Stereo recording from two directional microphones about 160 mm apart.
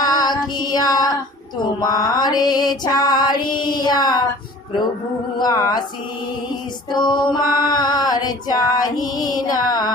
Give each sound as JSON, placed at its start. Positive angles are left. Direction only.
{"t": 0.0, "sound": "female singing", "side_deg": 25}
{"t": 5.4, "sound": "female singing", "side_deg": 20}
{"t": 6.9, "sound": "female singing", "side_deg": 30}